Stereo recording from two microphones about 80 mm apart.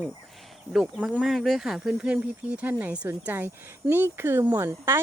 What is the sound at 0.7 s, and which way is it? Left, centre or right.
Speech, centre.